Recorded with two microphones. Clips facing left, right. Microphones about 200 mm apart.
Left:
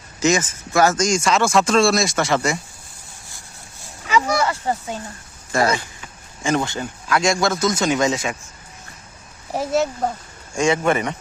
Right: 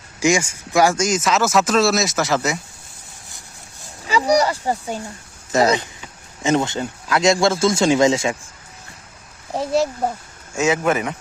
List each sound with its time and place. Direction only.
0.2 s speech: 10° right (ahead or behind)
4.0 s a sound: 35° right (ahead or behind)
5.5 s speech: 20° right (ahead or behind)
9.7 s speech: centre (ahead or behind)